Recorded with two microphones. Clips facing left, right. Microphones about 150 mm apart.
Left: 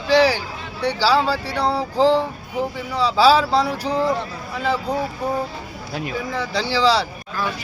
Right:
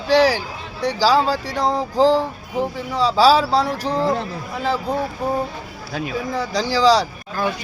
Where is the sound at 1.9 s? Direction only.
35° right (ahead or behind).